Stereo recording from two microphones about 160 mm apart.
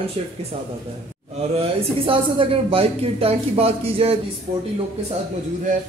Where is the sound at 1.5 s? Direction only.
35° right (ahead or behind).